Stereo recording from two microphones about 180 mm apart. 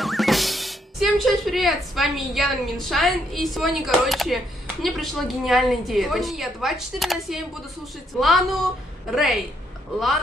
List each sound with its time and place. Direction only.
0.0 s a woman's voice: centre (ahead or behind)